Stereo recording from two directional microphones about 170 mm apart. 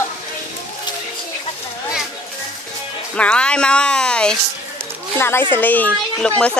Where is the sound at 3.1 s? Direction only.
5° left (ahead or behind).